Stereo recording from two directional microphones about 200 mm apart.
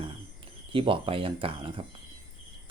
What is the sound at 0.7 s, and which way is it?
Speech, 25° right (ahead or behind).